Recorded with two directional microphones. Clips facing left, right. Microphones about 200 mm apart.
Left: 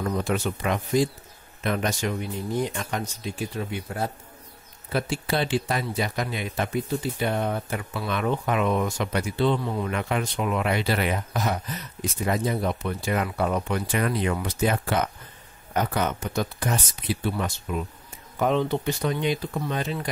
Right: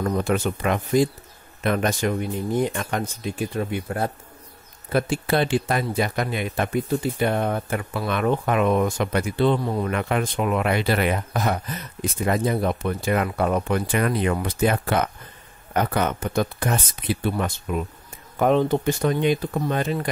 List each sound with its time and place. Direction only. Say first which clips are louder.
0.0 s speech: right 3 dB; 50° right (ahead or behind)